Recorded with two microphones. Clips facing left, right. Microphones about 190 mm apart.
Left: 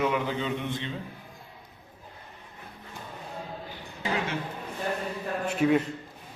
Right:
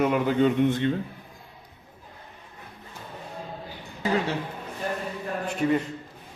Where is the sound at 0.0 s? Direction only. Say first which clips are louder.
Right 6 dB; 50° right (ahead or behind).